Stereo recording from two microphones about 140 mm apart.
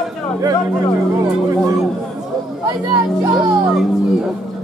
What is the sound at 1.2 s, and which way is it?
Speech, 25° right (ahead or behind).